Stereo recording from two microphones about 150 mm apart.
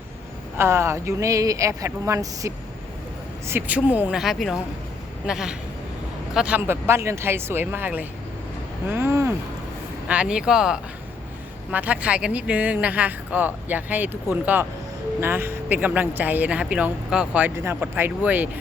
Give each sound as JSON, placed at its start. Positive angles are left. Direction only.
{"t": 0.5, "sound": "speech", "side_deg": -15}